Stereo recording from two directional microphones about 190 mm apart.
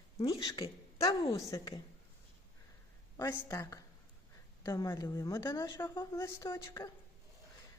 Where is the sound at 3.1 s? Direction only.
15° left (ahead or behind).